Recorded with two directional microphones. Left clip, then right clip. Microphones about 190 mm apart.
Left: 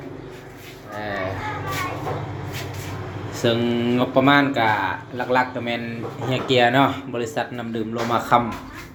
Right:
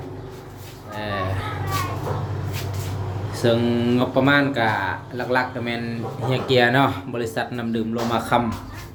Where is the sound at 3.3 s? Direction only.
10° right (ahead or behind).